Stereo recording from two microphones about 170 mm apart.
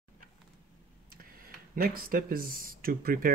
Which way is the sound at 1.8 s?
60° right (ahead or behind).